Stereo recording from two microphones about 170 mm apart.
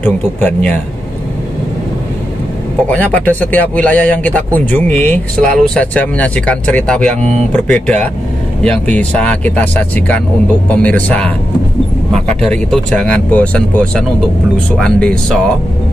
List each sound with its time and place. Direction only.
0.0 s speech: 10° left (ahead or behind)
2.9 s speech: 10° left (ahead or behind)
7.2 s speech: 40° right (ahead or behind)
7.5 s speech: 5° left (ahead or behind)